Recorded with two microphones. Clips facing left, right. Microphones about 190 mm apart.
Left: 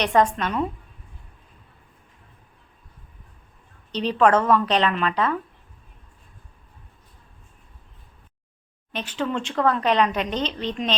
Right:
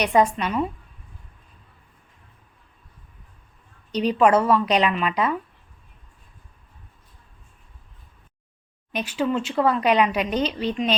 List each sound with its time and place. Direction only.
0.0 s speech: 10° right (ahead or behind)
3.9 s speech: 10° right (ahead or behind)
8.9 s speech: 10° right (ahead or behind)